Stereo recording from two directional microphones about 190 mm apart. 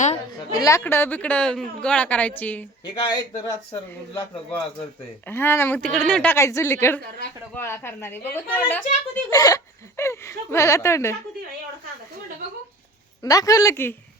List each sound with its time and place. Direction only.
0.5 s a woman's voice: 20° left (ahead or behind)
2.8 s speech: 20° left (ahead or behind)
5.2 s a woman's voice: 10° left (ahead or behind)
13.2 s a woman's voice: 20° left (ahead or behind)